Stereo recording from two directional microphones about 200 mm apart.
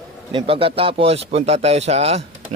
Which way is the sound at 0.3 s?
30° right (ahead or behind).